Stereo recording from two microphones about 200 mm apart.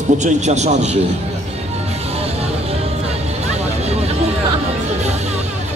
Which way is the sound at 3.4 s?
35° right (ahead or behind).